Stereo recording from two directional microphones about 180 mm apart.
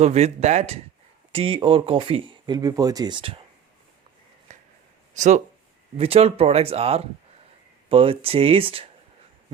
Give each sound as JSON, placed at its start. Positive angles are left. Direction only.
{"t": 0.0, "sound": "speech", "side_deg": -35}
{"t": 4.5, "sound": "a sound", "side_deg": -40}
{"t": 5.1, "sound": "speech", "side_deg": -40}